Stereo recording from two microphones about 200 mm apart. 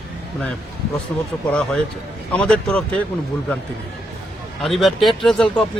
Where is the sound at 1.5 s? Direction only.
5° left (ahead or behind).